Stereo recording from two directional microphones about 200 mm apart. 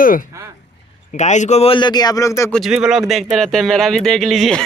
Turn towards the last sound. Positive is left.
turn(degrees=0)  # may be behind; listen again after turning